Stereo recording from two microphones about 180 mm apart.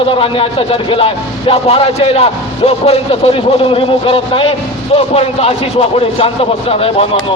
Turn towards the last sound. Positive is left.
turn(degrees=30)  # may be behind; listen again after turning